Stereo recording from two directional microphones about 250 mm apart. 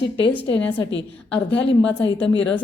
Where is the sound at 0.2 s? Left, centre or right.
Left.